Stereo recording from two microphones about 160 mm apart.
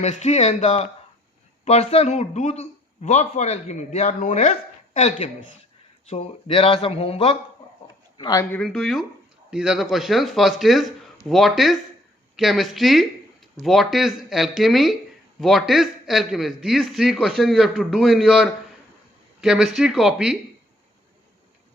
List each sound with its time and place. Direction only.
0.0 s a man's voice: 45° left (ahead or behind)
8.2 s speech: 20° left (ahead or behind)
8.5 s a man's voice: centre (ahead or behind)